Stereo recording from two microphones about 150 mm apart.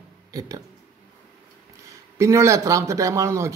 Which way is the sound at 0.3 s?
25° right (ahead or behind).